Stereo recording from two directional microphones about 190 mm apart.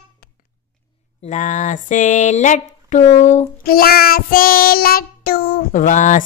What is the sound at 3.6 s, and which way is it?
Child singing, 50° left (ahead or behind).